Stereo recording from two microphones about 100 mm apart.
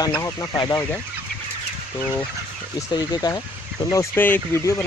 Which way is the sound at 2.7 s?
40° left (ahead or behind).